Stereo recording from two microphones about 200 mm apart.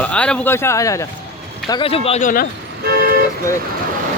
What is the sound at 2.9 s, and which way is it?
Vehicle, 50° right (ahead or behind).